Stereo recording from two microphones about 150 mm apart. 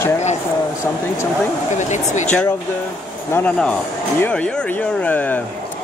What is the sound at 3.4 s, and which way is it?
Speech, 5° left (ahead or behind).